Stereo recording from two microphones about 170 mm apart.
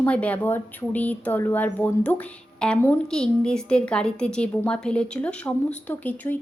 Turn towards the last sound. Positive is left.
turn(degrees=10)  # may be behind; listen again after turning